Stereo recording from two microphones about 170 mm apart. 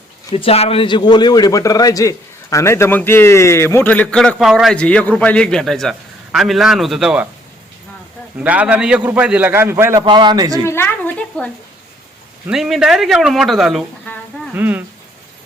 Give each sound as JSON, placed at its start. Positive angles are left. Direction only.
{"t": 0.3, "sound": "a man's voice", "side_deg": 35}
{"t": 8.4, "sound": "a man's voice", "side_deg": -10}
{"t": 10.0, "sound": "a man's voice", "side_deg": -25}
{"t": 10.7, "sound": "a man's voice", "side_deg": 10}